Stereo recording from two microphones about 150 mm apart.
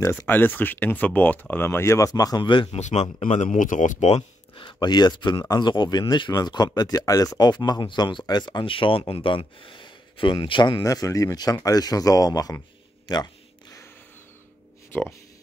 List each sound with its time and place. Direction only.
0.3 s speech: 15° left (ahead or behind); by 2.8 s 35° left (ahead or behind)
2.8 s speech: 45° left (ahead or behind)
4.6 s speech: 30° left (ahead or behind)